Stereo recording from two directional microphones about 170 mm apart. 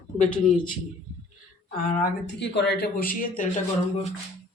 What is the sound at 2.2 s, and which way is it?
Speech, 90° left.